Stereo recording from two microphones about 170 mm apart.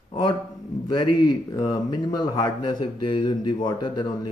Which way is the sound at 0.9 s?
25° left (ahead or behind).